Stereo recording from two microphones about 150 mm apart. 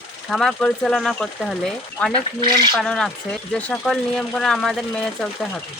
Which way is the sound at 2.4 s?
30° right (ahead or behind).